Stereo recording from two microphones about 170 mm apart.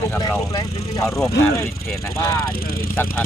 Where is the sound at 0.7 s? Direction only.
40° left (ahead or behind).